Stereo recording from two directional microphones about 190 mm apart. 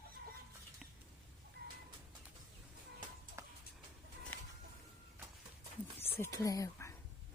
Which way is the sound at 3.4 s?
15° right (ahead or behind).